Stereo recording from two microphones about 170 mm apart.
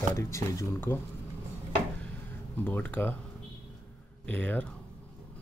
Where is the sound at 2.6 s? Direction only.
10° left (ahead or behind).